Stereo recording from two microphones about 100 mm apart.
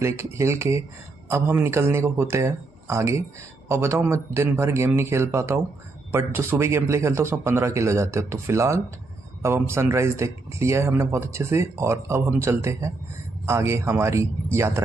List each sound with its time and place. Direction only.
0.0 s speech: 30° right (ahead or behind)